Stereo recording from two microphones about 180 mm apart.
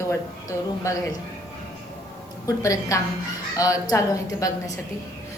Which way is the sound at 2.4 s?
20° left (ahead or behind).